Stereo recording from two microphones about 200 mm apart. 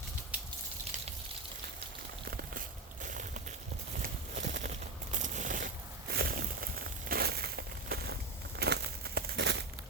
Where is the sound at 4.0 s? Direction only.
40° right (ahead or behind).